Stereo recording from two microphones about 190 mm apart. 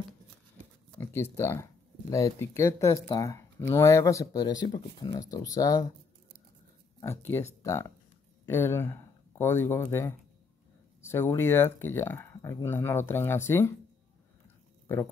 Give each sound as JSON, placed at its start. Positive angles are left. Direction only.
{"t": 0.9, "sound": "speech", "side_deg": 15}
{"t": 7.0, "sound": "speech", "side_deg": 15}